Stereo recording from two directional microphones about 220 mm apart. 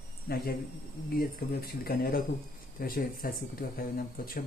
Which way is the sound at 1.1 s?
45° left (ahead or behind).